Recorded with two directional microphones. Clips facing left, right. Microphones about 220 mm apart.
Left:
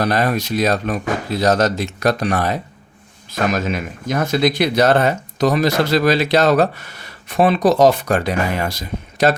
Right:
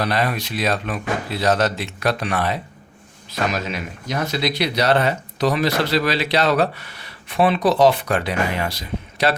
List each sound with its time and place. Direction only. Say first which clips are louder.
0.0 s speech: left 4 dB; 45° left (ahead or behind)